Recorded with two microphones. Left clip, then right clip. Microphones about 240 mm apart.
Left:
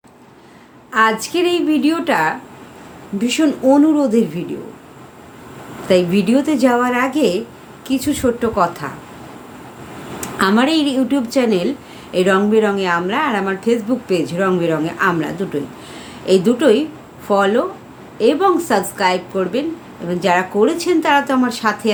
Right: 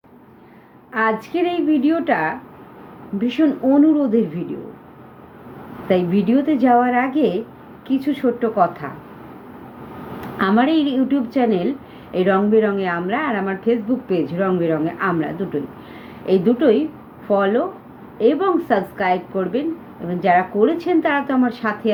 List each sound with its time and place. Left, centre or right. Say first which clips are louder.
0.9 s a woman's voice: left 4 dB; centre
5.9 s a woman's voice: left 4 dB; centre
10.2 s a woman's voice: left 3 dB; centre